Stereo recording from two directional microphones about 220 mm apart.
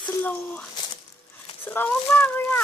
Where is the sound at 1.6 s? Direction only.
10° left (ahead or behind).